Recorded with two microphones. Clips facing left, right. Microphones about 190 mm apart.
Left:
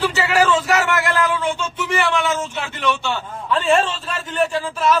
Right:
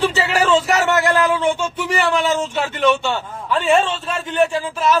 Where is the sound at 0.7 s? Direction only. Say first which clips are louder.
Right 3 dB; 30° right (ahead or behind).